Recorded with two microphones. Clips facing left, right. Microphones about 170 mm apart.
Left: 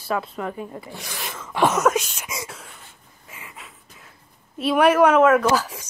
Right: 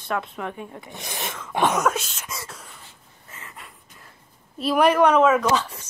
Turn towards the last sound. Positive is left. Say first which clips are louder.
# left 2 dB
turn(degrees=10)  # may be behind; listen again after turning